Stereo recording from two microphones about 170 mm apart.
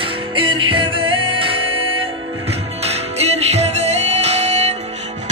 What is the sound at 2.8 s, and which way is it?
Music, 40° right (ahead or behind).